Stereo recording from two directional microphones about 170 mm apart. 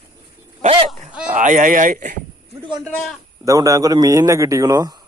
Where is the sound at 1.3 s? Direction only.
50° right (ahead or behind).